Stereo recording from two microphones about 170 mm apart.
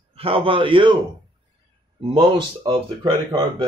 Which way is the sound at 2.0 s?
30° right (ahead or behind).